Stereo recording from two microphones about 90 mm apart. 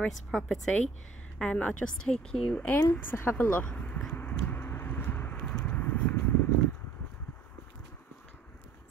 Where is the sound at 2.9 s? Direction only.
25° left (ahead or behind).